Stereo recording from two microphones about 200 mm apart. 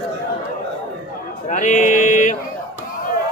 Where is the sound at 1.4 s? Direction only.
40° left (ahead or behind).